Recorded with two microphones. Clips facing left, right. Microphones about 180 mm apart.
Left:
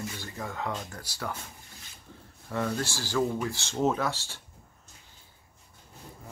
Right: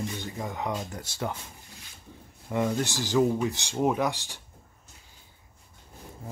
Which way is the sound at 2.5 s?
15° right (ahead or behind).